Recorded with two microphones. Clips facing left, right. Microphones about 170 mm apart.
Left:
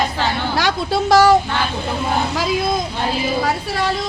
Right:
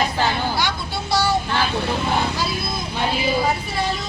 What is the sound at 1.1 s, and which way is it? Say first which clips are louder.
Child singing: left 9 dB; 90° left.